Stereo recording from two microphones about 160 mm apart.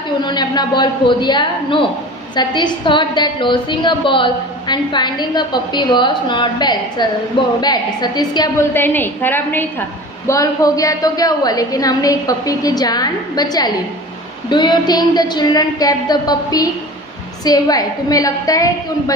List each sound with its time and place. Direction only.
0.2 s a woman's voice: 25° left (ahead or behind)
8.7 s a woman's voice: 15° left (ahead or behind)